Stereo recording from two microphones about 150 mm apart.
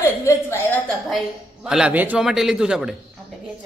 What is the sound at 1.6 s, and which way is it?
A man's voice, 5° right (ahead or behind).